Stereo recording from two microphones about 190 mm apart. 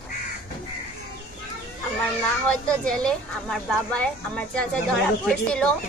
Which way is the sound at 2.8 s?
5° left (ahead or behind).